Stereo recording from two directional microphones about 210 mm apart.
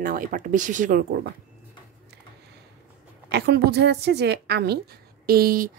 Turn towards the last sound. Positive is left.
turn(degrees=-45)  # may be behind; listen again after turning